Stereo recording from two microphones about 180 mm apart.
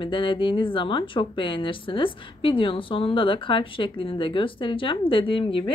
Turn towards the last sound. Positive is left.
turn(degrees=30)  # may be behind; listen again after turning